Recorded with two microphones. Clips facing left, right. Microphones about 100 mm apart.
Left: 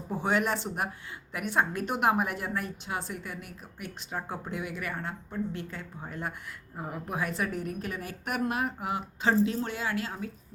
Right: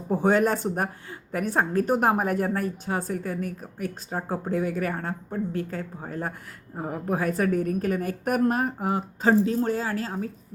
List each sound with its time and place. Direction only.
0.1 s a woman's voice: 45° right (ahead or behind)